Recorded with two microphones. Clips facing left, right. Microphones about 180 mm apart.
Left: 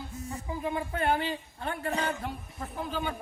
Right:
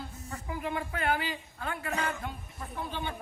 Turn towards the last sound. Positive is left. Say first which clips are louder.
# left 3 dB
turn(degrees=40)  # may be behind; listen again after turning